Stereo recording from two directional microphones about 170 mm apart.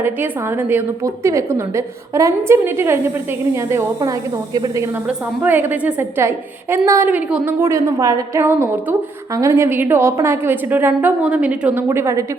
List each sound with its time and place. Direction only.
0.0 s a woman's voice: 15° right (ahead or behind)
5.0 s a woman's voice: 10° right (ahead or behind)